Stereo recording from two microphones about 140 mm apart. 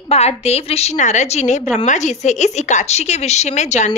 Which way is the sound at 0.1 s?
50° left (ahead or behind).